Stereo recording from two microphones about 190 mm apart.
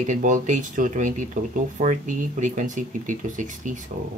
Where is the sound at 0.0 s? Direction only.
40° right (ahead or behind).